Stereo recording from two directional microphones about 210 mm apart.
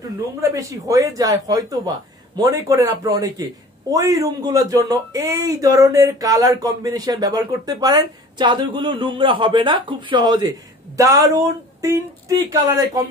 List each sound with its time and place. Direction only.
0.4 s speech: 15° right (ahead or behind)